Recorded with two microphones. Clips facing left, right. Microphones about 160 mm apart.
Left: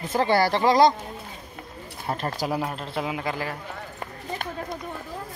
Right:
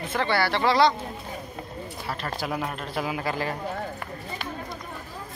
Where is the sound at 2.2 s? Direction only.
35° left (ahead or behind); by 3.6 s 10° left (ahead or behind).